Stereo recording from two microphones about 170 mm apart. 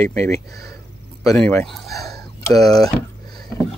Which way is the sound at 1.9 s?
20° left (ahead or behind).